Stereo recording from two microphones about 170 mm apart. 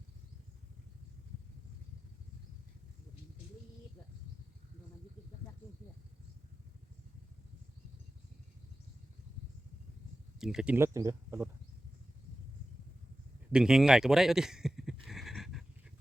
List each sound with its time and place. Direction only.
10.3 s speech: 5° right (ahead or behind)
13.5 s a man's voice: 5° right (ahead or behind)
15.0 s horse: centre (ahead or behind)